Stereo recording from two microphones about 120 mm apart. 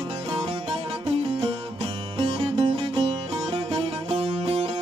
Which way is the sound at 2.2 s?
50° right (ahead or behind).